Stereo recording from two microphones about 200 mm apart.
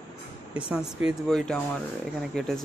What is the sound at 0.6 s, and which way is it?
Speech, 5° right (ahead or behind).